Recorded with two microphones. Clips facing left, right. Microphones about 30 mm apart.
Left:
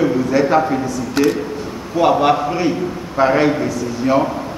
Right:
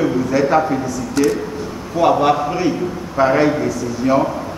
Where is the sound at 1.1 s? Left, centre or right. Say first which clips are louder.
Even; left.